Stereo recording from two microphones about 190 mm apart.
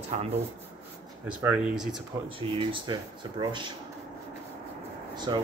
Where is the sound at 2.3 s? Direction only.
30° right (ahead or behind).